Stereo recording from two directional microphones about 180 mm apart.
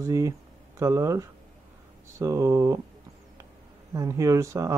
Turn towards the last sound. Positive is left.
turn(degrees=-15)  # may be behind; listen again after turning